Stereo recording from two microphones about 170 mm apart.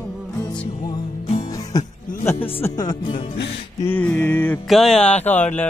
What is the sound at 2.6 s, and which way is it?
Speech, 25° left (ahead or behind).